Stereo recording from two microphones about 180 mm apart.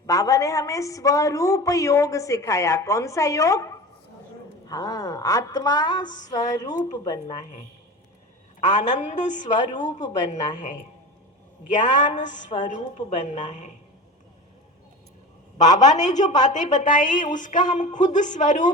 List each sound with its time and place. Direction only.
0.0 s a woman's voice: 20° left (ahead or behind)
8.6 s a woman's voice: 40° left (ahead or behind)
11.7 s a woman's voice: 45° left (ahead or behind)
15.5 s a woman's voice: 45° left (ahead or behind)